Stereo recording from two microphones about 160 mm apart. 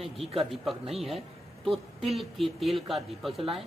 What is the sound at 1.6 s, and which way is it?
A woman's voice, centre (ahead or behind).